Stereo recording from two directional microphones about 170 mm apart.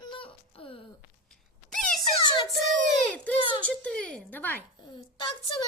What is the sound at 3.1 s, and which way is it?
Speech, 10° left (ahead or behind).